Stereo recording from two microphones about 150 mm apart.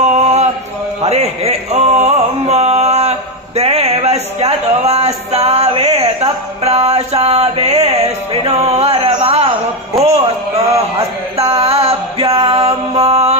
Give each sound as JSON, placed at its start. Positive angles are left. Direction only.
{"t": 0.0, "sound": "mantra", "side_deg": -45}
{"t": 1.0, "sound": "a sound", "side_deg": -45}
{"t": 6.6, "sound": "music", "side_deg": -45}
{"t": 9.9, "sound": "a sound", "side_deg": -45}
{"t": 11.3, "sound": "mantra", "side_deg": -40}
{"t": 12.3, "sound": "male singing", "side_deg": -40}
{"t": 13.1, "sound": "mantra", "side_deg": -45}